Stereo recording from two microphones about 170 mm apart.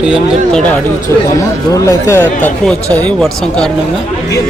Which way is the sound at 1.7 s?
15° left (ahead or behind).